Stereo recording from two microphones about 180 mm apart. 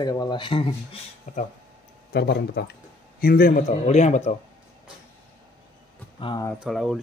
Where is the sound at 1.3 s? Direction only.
45° left (ahead or behind).